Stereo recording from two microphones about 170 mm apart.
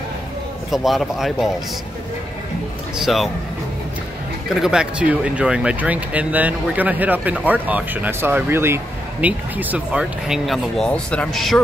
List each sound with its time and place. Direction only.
0.7 s speech: centre (ahead or behind)
3.0 s speech: centre (ahead or behind)
4.6 s speech: 5° right (ahead or behind)